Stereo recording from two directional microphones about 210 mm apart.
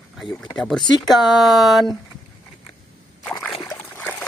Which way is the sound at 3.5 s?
25° left (ahead or behind).